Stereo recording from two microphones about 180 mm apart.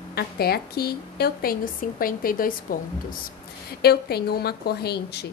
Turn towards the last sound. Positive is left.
turn(degrees=65)  # may be behind; listen again after turning